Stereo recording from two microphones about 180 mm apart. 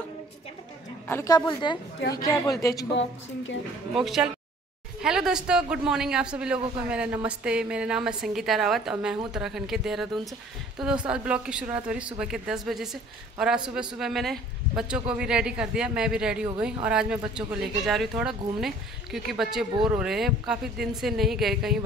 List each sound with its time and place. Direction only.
1.0 s a woman's voice: 15° left (ahead or behind)
2.9 s a woman's voice: 90° left
4.0 s a woman's voice: centre (ahead or behind)